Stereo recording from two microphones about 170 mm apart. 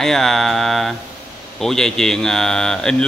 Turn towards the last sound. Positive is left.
turn(degrees=5)  # may be behind; listen again after turning